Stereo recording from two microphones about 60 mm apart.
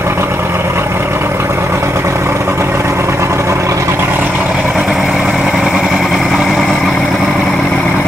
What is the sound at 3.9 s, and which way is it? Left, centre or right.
Vehicle, right.